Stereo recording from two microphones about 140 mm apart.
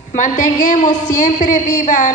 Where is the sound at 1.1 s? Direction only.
70° left (ahead or behind).